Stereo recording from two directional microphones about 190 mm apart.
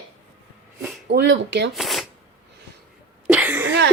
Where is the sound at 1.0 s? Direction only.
65° right (ahead or behind).